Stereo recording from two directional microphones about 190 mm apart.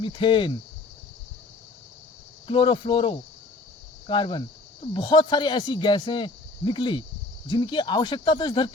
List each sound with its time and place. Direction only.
0.0 s speech: 25° left (ahead or behind)
2.5 s speech: 25° left (ahead or behind)